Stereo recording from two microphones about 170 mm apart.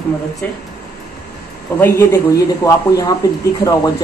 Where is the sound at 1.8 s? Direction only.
15° left (ahead or behind).